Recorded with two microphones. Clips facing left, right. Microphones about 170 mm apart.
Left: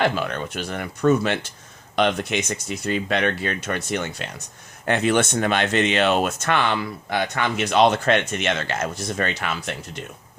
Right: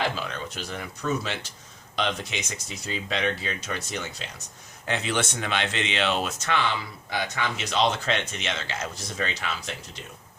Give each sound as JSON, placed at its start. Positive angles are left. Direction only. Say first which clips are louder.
{"t": 0.0, "sound": "speech", "louder": "left 7 dB", "side_deg": 60}